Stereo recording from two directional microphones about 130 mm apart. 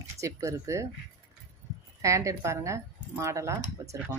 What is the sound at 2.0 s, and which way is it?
Speech, 25° right (ahead or behind).